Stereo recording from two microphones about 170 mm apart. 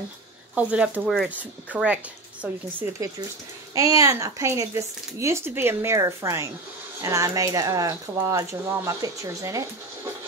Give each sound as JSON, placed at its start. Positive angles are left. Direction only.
{"t": 0.6, "sound": "speech", "side_deg": -5}
{"t": 1.1, "sound": "speech", "side_deg": 5}
{"t": 1.7, "sound": "speech", "side_deg": -10}